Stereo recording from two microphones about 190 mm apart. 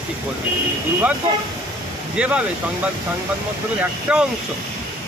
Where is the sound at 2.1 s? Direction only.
5° right (ahead or behind).